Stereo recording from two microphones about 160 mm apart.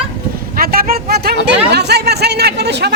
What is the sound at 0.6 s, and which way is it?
Speech, 65° right (ahead or behind).